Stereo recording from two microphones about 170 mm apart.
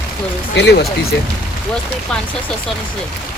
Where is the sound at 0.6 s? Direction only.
85° left.